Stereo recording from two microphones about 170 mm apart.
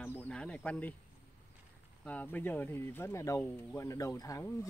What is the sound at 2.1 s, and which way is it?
Speech, 10° left (ahead or behind).